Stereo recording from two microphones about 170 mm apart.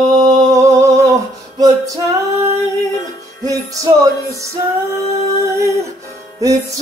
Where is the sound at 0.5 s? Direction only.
20° right (ahead or behind).